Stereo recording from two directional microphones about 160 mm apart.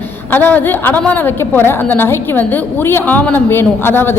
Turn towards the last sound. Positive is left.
turn(degrees=15)  # may be behind; listen again after turning